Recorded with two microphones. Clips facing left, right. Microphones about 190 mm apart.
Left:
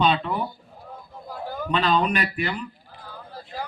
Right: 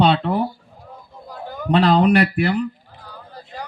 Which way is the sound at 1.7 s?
70° right (ahead or behind).